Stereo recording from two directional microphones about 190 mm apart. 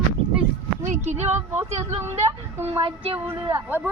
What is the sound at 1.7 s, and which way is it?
Speech, 15° right (ahead or behind).